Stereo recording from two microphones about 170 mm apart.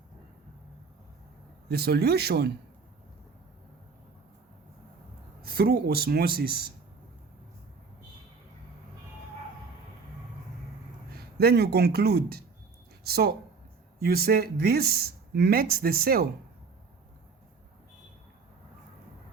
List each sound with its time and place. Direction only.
1.7 s speech: 70° right (ahead or behind)
5.4 s speech: 65° right (ahead or behind)
11.2 s speech: 65° right (ahead or behind)